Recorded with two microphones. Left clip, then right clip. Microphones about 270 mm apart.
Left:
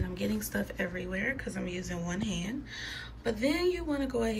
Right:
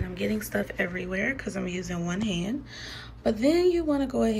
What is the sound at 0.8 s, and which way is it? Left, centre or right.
Speech, centre.